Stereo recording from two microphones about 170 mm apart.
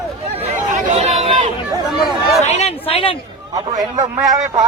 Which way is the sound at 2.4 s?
40° left (ahead or behind).